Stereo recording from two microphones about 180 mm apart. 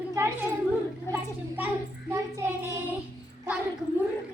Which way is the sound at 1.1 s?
10° right (ahead or behind).